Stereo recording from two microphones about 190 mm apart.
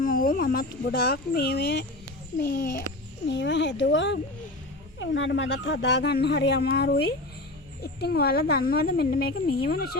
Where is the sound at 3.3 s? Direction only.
70° left (ahead or behind).